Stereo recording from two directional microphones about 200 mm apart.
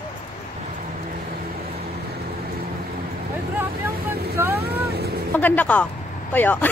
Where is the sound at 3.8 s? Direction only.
10° right (ahead or behind).